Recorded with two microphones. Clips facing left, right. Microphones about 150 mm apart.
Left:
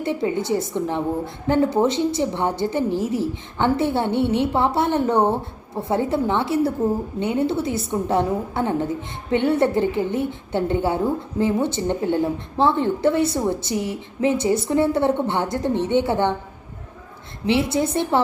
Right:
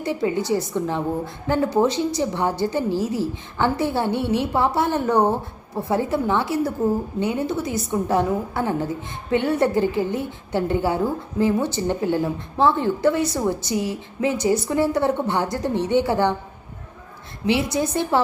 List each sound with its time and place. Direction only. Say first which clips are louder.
0.0 s a woman's voice: even; 25° left (ahead or behind)
17.4 s a woman's voice: left 1 dB; 25° left (ahead or behind)